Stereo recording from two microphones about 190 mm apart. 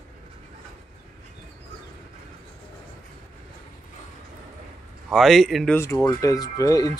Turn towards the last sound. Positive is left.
turn(degrees=20)  # may be behind; listen again after turning